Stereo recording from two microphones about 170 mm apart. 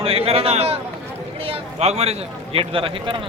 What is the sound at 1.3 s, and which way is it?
A man's voice, 35° right (ahead or behind).